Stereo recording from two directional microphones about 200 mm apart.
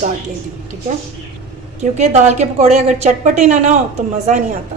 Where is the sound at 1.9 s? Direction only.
35° right (ahead or behind).